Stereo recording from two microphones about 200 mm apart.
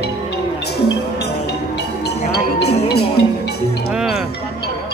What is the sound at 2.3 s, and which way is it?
Music, 55° left (ahead or behind).